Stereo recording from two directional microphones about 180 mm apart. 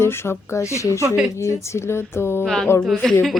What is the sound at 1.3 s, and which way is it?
A woman's voice, 15° left (ahead or behind).